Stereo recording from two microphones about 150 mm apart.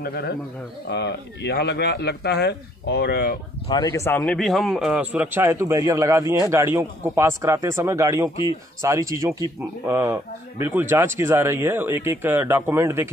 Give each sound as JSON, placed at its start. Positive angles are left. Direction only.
{"t": 0.0, "sound": "speech", "side_deg": 90}
{"t": 1.5, "sound": "speech", "side_deg": 90}
{"t": 3.6, "sound": "a man's voice", "side_deg": 30}